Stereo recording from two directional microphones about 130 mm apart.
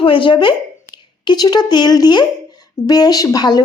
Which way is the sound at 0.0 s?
40° left (ahead or behind).